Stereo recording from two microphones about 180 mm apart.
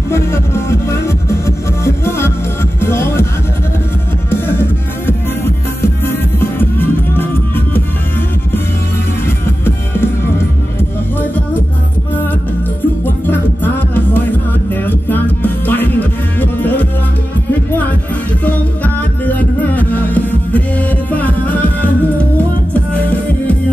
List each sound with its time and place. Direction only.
0.1 s music: 15° left (ahead or behind)
4.3 s music: 15° left (ahead or behind)
9.7 s music: 15° left (ahead or behind)
14.9 s music: 10° left (ahead or behind)
19.2 s music: 10° left (ahead or behind)